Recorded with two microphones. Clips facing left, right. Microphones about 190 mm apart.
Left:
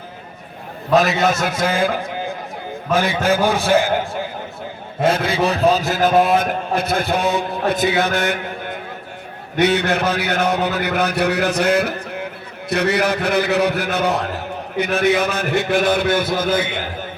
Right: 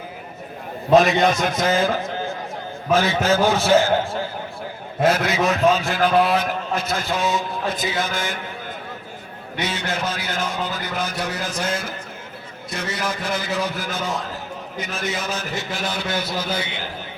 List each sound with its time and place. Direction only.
0.9 s a man's voice: centre (ahead or behind)
5.0 s a man's voice: 30° left (ahead or behind); by 16.8 s 50° left (ahead or behind)